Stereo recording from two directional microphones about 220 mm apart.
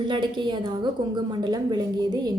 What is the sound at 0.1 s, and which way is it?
A woman's voice, 20° right (ahead or behind).